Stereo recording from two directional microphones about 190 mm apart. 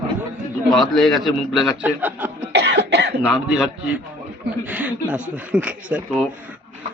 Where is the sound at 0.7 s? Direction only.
Centre (ahead or behind).